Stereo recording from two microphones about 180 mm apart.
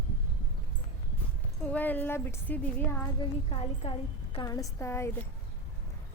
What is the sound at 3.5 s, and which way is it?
Speech, 35° left (ahead or behind).